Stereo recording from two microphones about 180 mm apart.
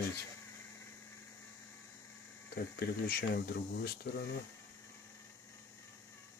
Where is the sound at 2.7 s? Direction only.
60° left (ahead or behind).